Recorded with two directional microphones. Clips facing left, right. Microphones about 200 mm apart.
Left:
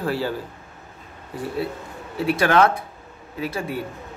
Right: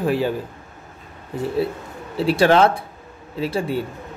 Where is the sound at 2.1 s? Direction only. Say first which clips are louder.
Right 3 dB; 30° right (ahead or behind).